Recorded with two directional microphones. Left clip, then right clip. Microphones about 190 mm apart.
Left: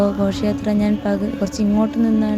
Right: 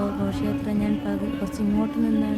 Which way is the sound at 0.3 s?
25° left (ahead or behind).